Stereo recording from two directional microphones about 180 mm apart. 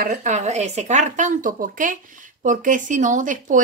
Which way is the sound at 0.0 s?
45° right (ahead or behind).